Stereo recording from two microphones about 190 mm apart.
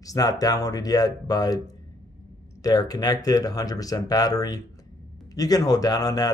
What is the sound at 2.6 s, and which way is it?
Speech, 20° left (ahead or behind).